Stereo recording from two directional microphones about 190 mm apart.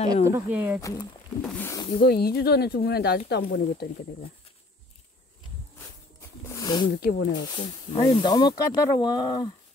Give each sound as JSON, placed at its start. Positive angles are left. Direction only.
{"t": 0.1, "sound": "speech", "side_deg": -15}
{"t": 0.7, "sound": "speech", "side_deg": 20}
{"t": 2.0, "sound": "speech", "side_deg": 55}
{"t": 6.4, "sound": "snake", "side_deg": 15}
{"t": 7.0, "sound": "speech", "side_deg": 55}
{"t": 7.3, "sound": "speech", "side_deg": 20}